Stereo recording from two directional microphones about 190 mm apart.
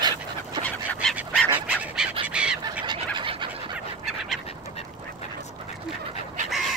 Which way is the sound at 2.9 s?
25° right (ahead or behind).